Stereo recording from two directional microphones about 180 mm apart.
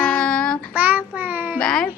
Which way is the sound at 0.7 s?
10° right (ahead or behind).